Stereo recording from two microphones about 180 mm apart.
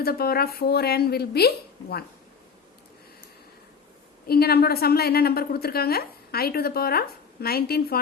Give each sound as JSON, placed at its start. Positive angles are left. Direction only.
{"t": 0.0, "sound": "a woman's voice", "side_deg": 55}
{"t": 4.3, "sound": "a woman's voice", "side_deg": 60}